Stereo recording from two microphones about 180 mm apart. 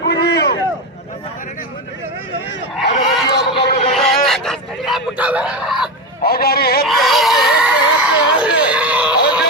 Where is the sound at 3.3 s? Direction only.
65° left (ahead or behind).